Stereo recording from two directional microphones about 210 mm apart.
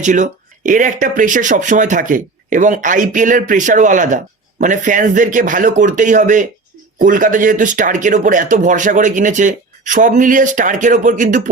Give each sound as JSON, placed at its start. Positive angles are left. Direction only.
{"t": 0.0, "sound": "speech", "side_deg": -35}